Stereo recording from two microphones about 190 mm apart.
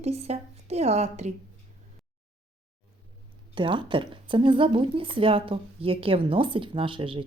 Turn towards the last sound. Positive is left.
turn(degrees=-25)  # may be behind; listen again after turning